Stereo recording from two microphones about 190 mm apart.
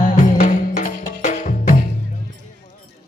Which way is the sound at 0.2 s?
45° left (ahead or behind).